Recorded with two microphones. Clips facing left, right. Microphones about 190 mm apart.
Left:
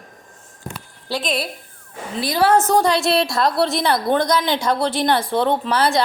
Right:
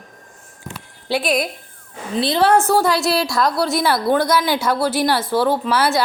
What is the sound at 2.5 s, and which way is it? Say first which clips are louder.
A woman's voice: even; 10° right (ahead or behind).